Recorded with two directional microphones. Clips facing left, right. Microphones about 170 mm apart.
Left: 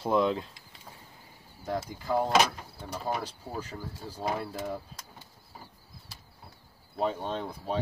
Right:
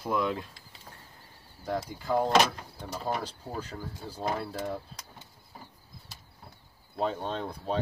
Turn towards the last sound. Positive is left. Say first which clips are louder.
# right 1 dB
turn(degrees=5)  # may be behind; listen again after turning